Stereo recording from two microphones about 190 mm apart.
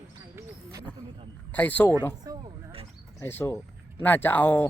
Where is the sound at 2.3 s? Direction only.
20° right (ahead or behind).